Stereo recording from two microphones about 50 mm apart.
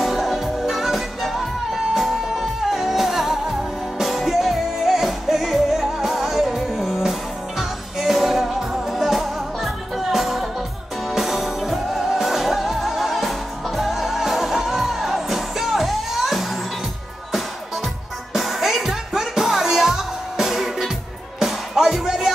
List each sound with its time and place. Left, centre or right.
0.0 s music: centre
18.3 s music: centre